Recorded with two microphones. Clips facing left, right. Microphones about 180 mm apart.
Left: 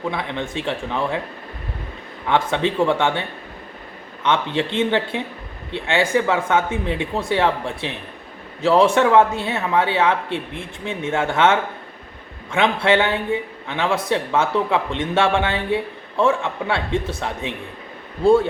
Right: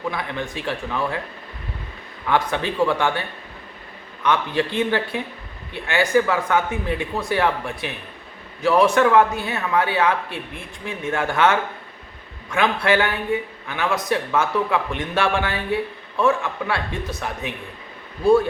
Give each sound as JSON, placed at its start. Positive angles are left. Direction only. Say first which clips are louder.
{"t": 0.1, "sound": "a man's voice", "louder": "left 2 dB", "side_deg": 25}
{"t": 2.3, "sound": "a man's voice", "louder": "left 2 dB", "side_deg": 25}